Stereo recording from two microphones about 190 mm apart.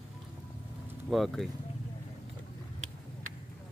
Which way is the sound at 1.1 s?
Centre (ahead or behind).